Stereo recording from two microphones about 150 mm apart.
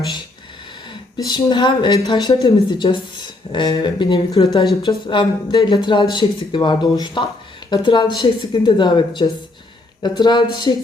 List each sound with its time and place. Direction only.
1.1 s a woman's voice: 25° left (ahead or behind)